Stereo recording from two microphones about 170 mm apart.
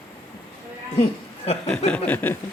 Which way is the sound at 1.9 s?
10° left (ahead or behind).